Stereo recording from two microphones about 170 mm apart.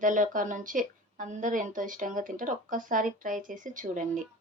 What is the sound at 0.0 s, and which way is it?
A woman's voice, 50° right (ahead or behind).